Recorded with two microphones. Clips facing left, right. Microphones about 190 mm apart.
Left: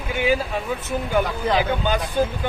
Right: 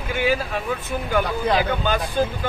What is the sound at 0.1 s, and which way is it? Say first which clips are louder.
A man's voice: left 1 dB; 15° left (ahead or behind).